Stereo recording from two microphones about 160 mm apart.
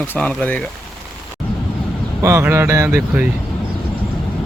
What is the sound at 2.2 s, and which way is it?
Speech, 15° right (ahead or behind).